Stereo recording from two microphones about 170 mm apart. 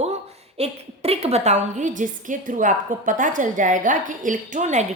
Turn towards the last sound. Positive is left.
turn(degrees=-45)  # may be behind; listen again after turning